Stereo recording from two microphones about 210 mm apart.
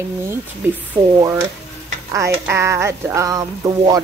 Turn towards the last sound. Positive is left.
turn(degrees=-15)  # may be behind; listen again after turning